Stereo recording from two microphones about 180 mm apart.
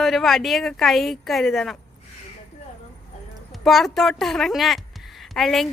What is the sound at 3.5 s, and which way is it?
Speech, centre (ahead or behind).